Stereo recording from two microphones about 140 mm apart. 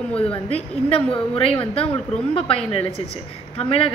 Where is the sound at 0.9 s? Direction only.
40° left (ahead or behind).